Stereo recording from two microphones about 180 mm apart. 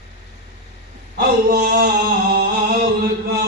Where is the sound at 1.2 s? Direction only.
55° right (ahead or behind).